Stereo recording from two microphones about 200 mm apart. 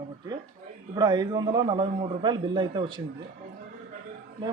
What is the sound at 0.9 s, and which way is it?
A man's voice, 20° right (ahead or behind).